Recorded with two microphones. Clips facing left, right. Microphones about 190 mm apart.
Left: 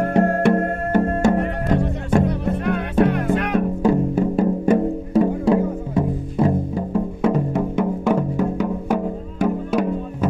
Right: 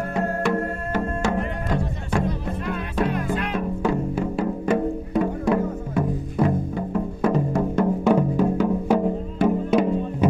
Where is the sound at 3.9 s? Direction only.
45° left (ahead or behind); by 7.3 s 30° left (ahead or behind).